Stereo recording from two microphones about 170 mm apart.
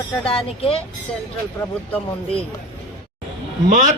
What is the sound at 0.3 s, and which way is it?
Speech, 35° left (ahead or behind).